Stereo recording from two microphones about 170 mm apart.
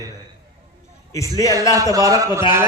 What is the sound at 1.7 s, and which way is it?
Speech, 20° right (ahead or behind).